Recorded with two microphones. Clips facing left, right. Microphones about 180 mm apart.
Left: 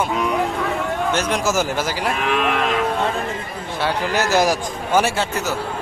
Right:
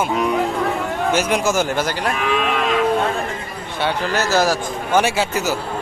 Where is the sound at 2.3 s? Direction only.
55° left (ahead or behind).